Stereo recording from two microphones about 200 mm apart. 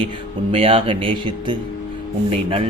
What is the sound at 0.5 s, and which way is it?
A man's voice, 30° right (ahead or behind).